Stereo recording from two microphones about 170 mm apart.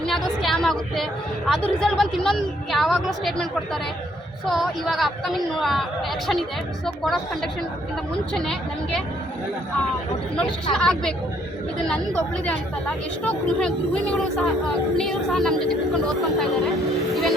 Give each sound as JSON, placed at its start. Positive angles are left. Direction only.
{"t": 0.0, "sound": "a woman's voice", "side_deg": 0}
{"t": 6.8, "sound": "speech", "side_deg": 0}
{"t": 10.3, "sound": "speech", "side_deg": 5}